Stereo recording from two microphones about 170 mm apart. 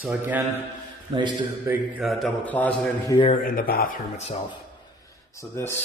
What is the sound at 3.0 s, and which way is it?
Speech, 30° left (ahead or behind).